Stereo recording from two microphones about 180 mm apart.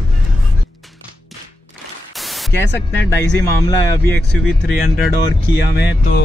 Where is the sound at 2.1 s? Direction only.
Centre (ahead or behind).